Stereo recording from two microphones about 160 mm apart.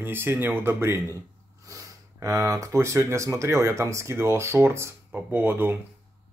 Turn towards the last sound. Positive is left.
turn(degrees=-15)  # may be behind; listen again after turning